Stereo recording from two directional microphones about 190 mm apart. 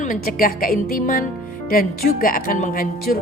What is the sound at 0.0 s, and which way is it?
A woman's voice, 45° left (ahead or behind).